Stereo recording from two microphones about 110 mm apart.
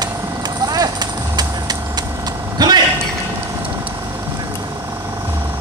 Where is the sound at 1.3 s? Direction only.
35° right (ahead or behind).